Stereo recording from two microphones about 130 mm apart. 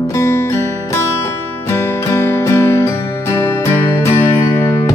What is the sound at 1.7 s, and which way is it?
Music, 20° left (ahead or behind).